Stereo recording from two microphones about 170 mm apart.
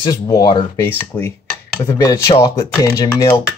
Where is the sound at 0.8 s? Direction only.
10° left (ahead or behind).